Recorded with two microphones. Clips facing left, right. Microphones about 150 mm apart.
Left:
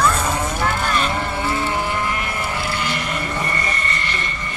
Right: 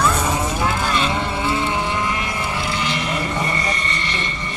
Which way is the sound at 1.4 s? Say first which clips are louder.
Even; centre (ahead or behind).